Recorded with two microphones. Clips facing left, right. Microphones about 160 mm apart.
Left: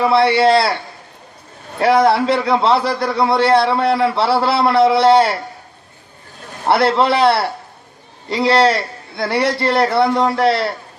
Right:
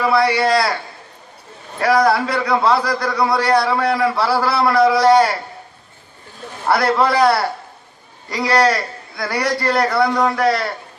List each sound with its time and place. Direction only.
0.0 s a man's voice: 25° left (ahead or behind)
1.8 s a man's voice: 25° left (ahead or behind)
6.7 s a man's voice: 25° left (ahead or behind)